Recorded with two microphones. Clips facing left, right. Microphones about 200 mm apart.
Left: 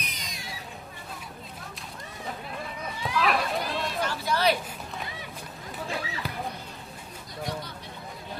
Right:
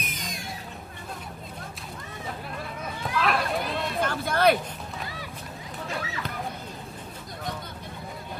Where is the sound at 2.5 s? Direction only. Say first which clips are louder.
Right 1 dB; centre (ahead or behind).